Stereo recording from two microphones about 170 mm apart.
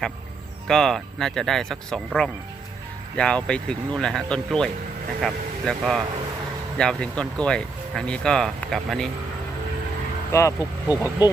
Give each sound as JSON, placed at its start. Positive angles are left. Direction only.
{"t": 0.7, "sound": "speech", "side_deg": 5}
{"t": 10.8, "sound": "speech", "side_deg": 20}